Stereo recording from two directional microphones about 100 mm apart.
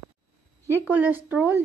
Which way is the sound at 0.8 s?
15° right (ahead or behind).